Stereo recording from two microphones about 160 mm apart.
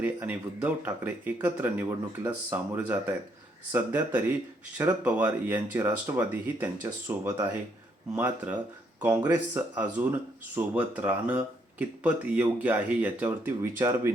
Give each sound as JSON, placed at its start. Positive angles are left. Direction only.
{"t": 0.0, "sound": "speech", "side_deg": -10}